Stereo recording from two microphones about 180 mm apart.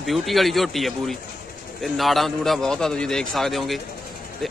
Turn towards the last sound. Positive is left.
turn(degrees=0)  # may be behind; listen again after turning